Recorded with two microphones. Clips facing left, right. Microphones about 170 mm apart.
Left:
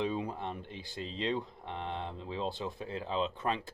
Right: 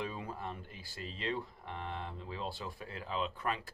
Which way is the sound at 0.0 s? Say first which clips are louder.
Left 6 dB; 20° left (ahead or behind).